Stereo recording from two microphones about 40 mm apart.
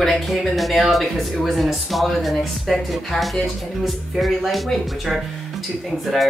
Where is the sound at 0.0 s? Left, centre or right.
Centre.